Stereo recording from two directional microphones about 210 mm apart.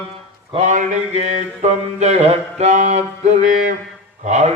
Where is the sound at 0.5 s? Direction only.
35° right (ahead or behind).